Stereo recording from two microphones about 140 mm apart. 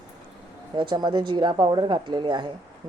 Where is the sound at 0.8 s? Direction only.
35° right (ahead or behind).